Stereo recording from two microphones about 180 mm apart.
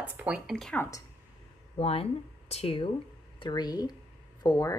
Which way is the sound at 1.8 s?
35° left (ahead or behind).